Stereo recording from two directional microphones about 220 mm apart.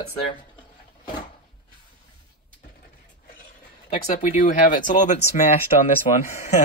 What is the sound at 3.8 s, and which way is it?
Speech, 35° left (ahead or behind).